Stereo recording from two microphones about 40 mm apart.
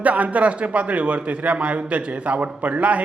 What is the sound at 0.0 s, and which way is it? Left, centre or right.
A man's voice, right.